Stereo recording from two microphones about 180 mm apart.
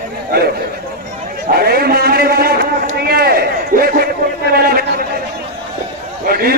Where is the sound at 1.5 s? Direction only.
60° right (ahead or behind).